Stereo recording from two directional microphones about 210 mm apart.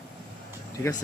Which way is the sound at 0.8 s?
20° left (ahead or behind).